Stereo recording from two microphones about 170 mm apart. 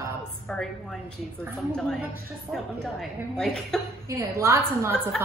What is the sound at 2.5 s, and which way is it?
A woman's voice, centre (ahead or behind).